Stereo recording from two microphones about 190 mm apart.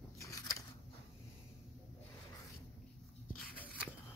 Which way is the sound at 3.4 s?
5° left (ahead or behind).